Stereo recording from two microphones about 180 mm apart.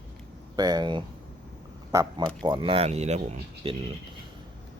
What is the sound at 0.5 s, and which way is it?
Speech, 20° right (ahead or behind).